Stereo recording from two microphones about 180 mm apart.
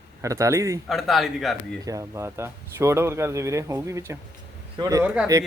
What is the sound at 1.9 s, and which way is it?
Speech, 15° right (ahead or behind).